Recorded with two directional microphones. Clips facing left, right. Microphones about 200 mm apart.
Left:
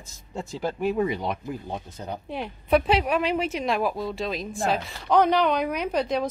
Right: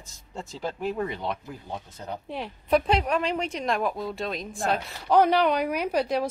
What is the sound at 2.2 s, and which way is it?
A woman's voice, centre (ahead or behind).